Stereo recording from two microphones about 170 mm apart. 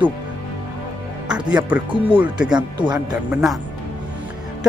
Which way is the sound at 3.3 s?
Centre (ahead or behind).